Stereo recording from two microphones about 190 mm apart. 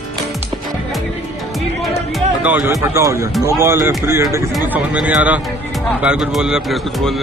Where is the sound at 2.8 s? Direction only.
15° right (ahead or behind); by 7.1 s centre (ahead or behind).